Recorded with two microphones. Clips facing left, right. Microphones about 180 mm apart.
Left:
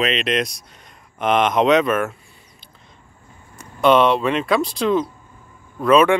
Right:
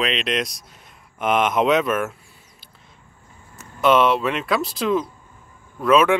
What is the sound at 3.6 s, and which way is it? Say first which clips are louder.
Speech: left 2 dB; 5° right (ahead or behind).